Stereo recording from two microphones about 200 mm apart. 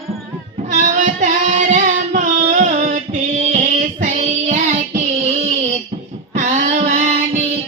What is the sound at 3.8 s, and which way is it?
Child singing, 40° right (ahead or behind).